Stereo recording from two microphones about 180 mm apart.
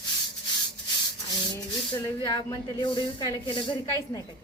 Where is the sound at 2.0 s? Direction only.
20° left (ahead or behind).